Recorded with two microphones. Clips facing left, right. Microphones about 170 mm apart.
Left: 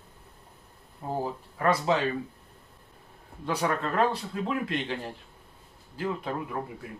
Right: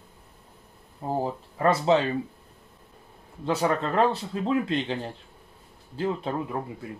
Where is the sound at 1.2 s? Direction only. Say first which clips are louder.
Right 3 dB; 25° right (ahead or behind).